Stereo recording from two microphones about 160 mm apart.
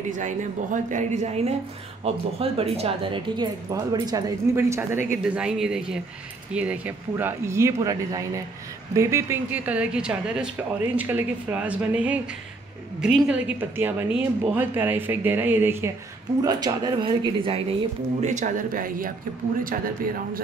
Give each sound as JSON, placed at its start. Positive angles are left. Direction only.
{"t": 0.1, "sound": "a woman's voice", "side_deg": -50}
{"t": 5.2, "sound": "speech", "side_deg": -5}
{"t": 16.4, "sound": "speech", "side_deg": -25}
{"t": 18.2, "sound": "speech", "side_deg": -50}